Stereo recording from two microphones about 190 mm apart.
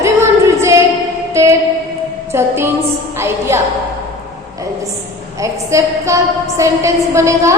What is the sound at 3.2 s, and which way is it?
Speech, 15° right (ahead or behind).